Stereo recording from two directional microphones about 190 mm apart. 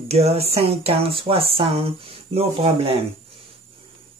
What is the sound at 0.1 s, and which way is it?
Speech, 30° right (ahead or behind).